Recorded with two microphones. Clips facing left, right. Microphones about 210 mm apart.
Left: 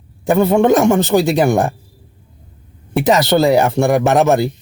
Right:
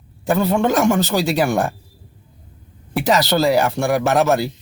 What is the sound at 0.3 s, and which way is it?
Speech, 25° left (ahead or behind).